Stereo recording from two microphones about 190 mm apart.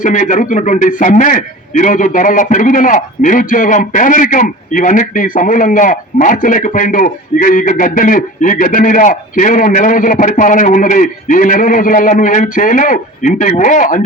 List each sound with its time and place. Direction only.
0.0 s a man's voice: 40° left (ahead or behind)